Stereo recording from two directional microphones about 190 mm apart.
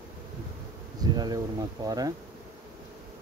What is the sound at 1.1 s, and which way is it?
Speech, 20° right (ahead or behind).